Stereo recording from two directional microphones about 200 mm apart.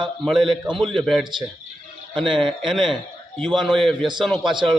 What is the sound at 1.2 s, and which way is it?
Speech, 25° right (ahead or behind).